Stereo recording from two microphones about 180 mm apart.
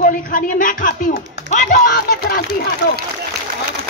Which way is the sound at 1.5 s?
45° left (ahead or behind).